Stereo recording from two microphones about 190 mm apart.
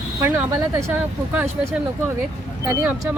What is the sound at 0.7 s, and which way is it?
Speech, 15° right (ahead or behind).